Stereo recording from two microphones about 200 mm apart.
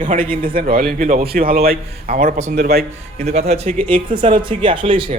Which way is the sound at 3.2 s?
30° right (ahead or behind).